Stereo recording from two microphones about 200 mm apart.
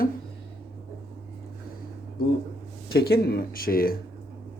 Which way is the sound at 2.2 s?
45° left (ahead or behind).